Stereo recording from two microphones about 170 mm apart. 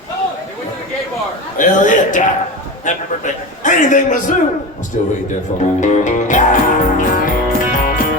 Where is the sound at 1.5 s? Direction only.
50° left (ahead or behind).